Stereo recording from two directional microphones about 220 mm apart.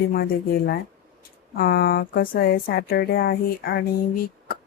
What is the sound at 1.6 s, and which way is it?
Speech, 40° left (ahead or behind).